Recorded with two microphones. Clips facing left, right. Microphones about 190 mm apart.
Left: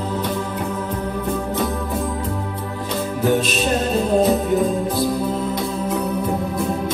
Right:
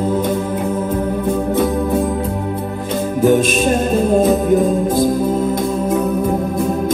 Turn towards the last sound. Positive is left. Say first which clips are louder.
# right 5 dB
turn(degrees=-45)  # may be behind; listen again after turning